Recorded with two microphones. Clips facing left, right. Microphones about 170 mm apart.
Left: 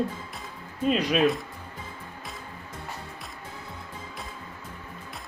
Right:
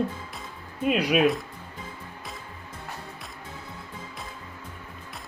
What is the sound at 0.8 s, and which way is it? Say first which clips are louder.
Speech: right 1 dB; 5° right (ahead or behind).